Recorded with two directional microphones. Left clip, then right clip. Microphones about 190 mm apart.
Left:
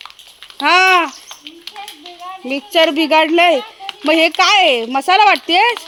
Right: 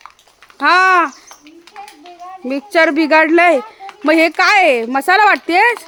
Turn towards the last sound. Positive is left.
turn(degrees=-20)  # may be behind; listen again after turning